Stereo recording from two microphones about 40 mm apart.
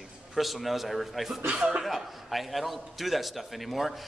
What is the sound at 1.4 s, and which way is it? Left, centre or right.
Speech, right.